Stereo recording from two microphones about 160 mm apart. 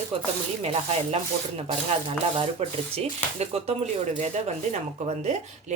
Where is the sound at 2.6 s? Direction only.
40° right (ahead or behind).